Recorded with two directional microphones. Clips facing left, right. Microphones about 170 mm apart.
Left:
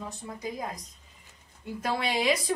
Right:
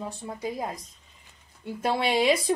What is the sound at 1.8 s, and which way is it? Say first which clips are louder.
Speech: right 4 dB; 25° right (ahead or behind).